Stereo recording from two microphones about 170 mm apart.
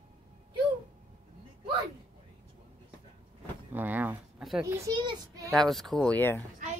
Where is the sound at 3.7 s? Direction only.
10° right (ahead or behind).